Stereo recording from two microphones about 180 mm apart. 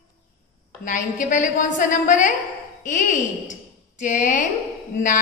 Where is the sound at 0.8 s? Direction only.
45° left (ahead or behind).